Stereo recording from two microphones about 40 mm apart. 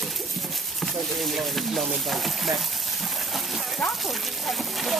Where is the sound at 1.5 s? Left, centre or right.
Centre.